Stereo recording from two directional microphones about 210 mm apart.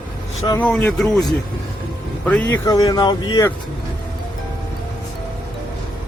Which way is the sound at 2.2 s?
5° left (ahead or behind).